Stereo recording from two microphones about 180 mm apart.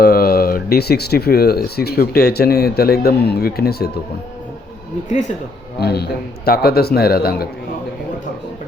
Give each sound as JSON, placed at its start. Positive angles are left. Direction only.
{"t": 0.0, "sound": "speech", "side_deg": 60}
{"t": 5.8, "sound": "speech", "side_deg": 65}